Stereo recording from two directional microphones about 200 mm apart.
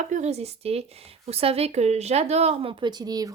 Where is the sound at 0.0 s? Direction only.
35° right (ahead or behind).